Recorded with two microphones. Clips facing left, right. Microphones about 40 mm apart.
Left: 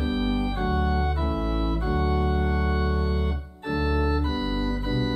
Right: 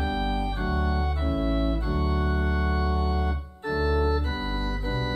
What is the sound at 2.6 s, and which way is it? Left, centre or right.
Music, left.